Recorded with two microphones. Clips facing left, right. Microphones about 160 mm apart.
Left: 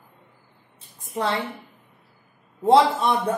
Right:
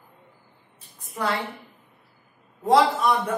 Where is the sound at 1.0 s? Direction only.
25° left (ahead or behind).